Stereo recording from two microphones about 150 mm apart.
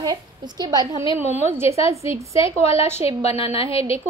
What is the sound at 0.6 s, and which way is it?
Speech, 25° right (ahead or behind).